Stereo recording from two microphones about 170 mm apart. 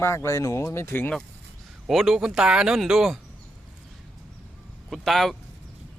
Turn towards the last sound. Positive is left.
turn(degrees=0)  # may be behind; listen again after turning